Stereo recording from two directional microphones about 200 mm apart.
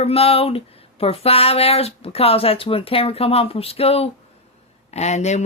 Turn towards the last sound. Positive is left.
turn(degrees=35)  # may be behind; listen again after turning